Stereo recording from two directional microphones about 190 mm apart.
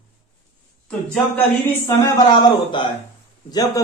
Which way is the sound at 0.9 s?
10° left (ahead or behind).